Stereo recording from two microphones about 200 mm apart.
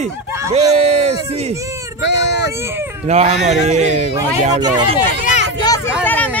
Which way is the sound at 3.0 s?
35° right (ahead or behind).